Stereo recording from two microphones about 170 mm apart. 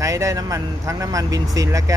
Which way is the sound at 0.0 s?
20° right (ahead or behind).